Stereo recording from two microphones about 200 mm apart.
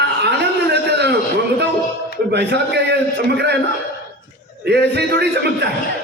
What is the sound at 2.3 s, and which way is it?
A man's voice, 55° right (ahead or behind).